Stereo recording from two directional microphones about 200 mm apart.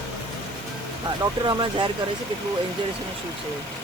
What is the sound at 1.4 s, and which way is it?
Speech, 25° right (ahead or behind).